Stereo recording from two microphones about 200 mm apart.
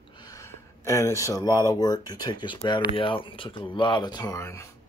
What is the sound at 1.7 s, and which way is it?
Speech, 20° left (ahead or behind).